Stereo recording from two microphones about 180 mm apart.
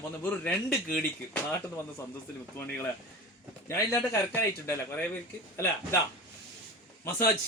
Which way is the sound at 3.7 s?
15° left (ahead or behind).